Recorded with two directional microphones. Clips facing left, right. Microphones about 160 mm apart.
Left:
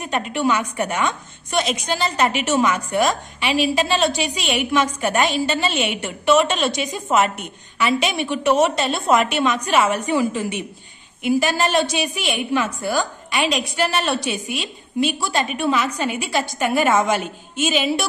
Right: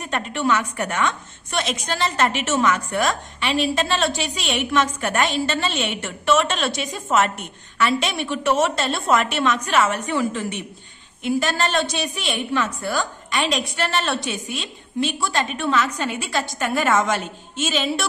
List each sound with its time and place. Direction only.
0.0 s a woman's voice: 5° left (ahead or behind)
2.6 s a woman's voice: 15° left (ahead or behind)
3.1 s a woman's voice: 5° left (ahead or behind)